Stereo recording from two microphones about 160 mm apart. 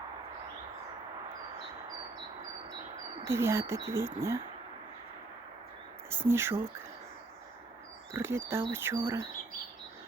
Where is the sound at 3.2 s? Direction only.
15° right (ahead or behind).